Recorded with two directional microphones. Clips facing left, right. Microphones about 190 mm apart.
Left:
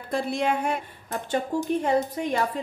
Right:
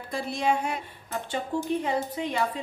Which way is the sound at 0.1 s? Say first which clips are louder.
Left 2 dB; 55° left (ahead or behind).